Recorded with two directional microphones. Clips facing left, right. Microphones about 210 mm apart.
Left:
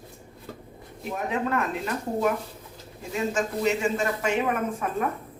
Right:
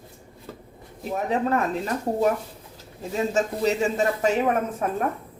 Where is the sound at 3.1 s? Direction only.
35° right (ahead or behind).